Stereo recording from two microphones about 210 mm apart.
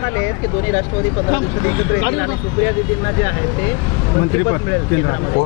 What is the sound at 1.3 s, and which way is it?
Speech, 15° left (ahead or behind).